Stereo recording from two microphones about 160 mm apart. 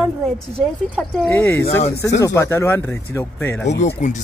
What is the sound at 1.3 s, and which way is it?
A man's voice, 15° left (ahead or behind).